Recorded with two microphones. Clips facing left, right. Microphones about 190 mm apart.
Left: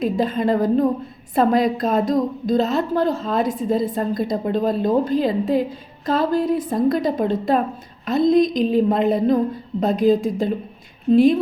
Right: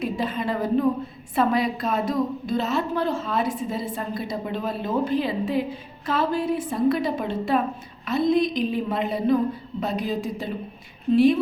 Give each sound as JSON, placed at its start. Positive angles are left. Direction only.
{"t": 0.0, "sound": "a woman's voice", "side_deg": 45}